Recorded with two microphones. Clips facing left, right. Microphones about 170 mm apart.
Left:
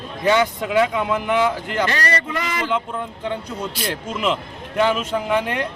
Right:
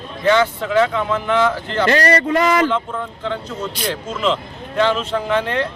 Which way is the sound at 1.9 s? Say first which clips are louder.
Right 8 dB; 45° right (ahead or behind).